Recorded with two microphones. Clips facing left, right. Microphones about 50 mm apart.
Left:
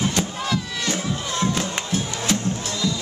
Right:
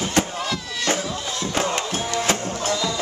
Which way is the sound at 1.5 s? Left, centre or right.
Right.